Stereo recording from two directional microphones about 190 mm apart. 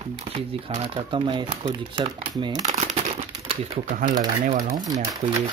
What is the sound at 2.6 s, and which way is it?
Crumpling, 35° right (ahead or behind).